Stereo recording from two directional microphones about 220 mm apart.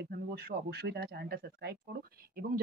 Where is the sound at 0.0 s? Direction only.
45° right (ahead or behind).